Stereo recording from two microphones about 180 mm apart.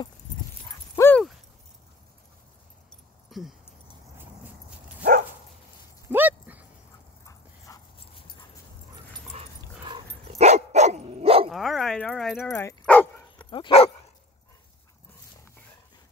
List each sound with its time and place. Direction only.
0.9 s dog: 15° left (ahead or behind)
3.3 s keys jangling: centre (ahead or behind)
4.2 s dog: 5° right (ahead or behind)
6.0 s dog: 10° right (ahead or behind)
7.2 s dog: 15° left (ahead or behind)
8.0 s dog: 30° left (ahead or behind)
9.8 s dog: 30° right (ahead or behind)
11.5 s a sound: centre (ahead or behind)
12.6 s dog: 10° left (ahead or behind)
13.5 s dog: 30° left (ahead or behind)